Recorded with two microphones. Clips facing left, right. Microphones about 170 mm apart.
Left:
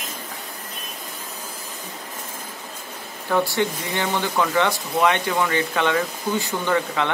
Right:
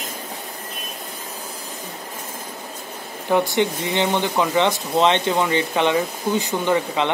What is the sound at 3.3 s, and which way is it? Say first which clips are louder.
Speech: right 2 dB; 20° right (ahead or behind).